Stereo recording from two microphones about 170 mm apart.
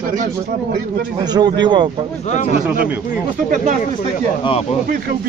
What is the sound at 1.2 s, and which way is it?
Speech, 25° right (ahead or behind).